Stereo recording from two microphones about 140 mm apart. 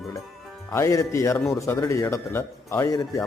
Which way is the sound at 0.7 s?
20° left (ahead or behind).